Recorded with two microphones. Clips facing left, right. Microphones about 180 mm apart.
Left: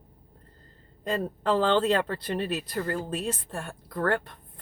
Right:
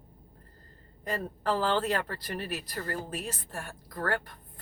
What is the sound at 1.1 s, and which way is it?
A woman's voice, 25° left (ahead or behind).